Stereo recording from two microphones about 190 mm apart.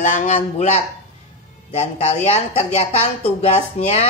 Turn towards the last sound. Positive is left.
turn(degrees=35)  # may be behind; listen again after turning